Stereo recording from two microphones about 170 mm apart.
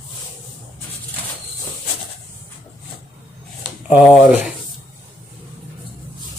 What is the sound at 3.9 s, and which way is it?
Speech, 10° right (ahead or behind).